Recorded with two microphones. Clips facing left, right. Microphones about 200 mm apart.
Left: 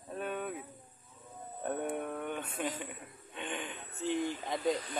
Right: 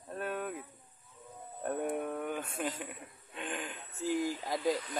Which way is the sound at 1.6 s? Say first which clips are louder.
Right 1 dB; centre (ahead or behind).